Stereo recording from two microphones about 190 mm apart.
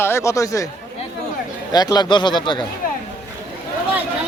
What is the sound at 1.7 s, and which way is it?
Speech, 20° left (ahead or behind).